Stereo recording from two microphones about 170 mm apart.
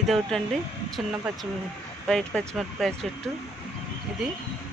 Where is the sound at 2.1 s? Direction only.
Centre (ahead or behind).